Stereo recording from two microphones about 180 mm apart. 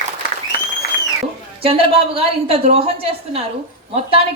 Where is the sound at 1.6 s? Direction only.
30° right (ahead or behind).